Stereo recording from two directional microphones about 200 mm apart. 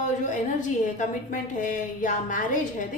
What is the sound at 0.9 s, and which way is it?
A woman's voice, 40° left (ahead or behind).